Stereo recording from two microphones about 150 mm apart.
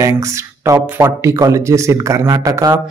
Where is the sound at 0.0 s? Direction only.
20° right (ahead or behind).